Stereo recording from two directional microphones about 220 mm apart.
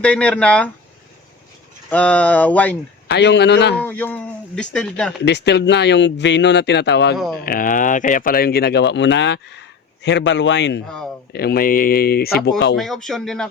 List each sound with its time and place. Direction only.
0.0 s speech: 5° left (ahead or behind)
1.9 s speech: 5° left (ahead or behind)
3.1 s speech: 50° left (ahead or behind)
3.8 s speech: 10° left (ahead or behind)
5.2 s speech: 50° left (ahead or behind)
7.4 s speech: 40° left (ahead or behind)
10.8 s speech: centre (ahead or behind)
11.3 s speech: 45° left (ahead or behind)
12.7 s speech: centre (ahead or behind)